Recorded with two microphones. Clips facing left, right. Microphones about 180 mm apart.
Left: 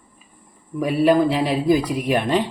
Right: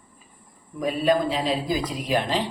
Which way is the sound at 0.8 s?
65° left (ahead or behind).